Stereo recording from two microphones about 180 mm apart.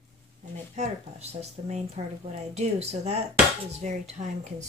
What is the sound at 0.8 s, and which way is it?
Speech, 35° right (ahead or behind).